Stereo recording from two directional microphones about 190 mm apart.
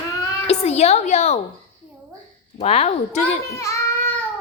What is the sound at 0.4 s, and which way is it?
Speech, 35° left (ahead or behind).